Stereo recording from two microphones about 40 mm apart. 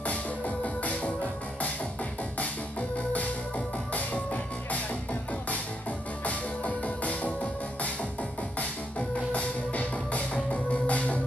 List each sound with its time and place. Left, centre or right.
0.0 s music: left
3.1 s music: left
6.2 s music: left
9.3 s music: left